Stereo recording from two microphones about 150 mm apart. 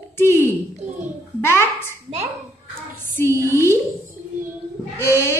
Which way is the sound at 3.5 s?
15° left (ahead or behind).